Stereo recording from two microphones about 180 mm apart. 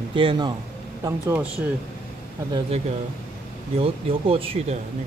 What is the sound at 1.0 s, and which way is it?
Speech, 10° right (ahead or behind).